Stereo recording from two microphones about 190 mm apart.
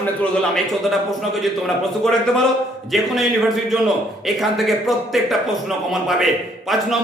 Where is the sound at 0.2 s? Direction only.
Centre (ahead or behind).